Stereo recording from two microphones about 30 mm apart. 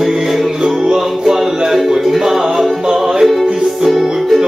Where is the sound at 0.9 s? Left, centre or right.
Centre.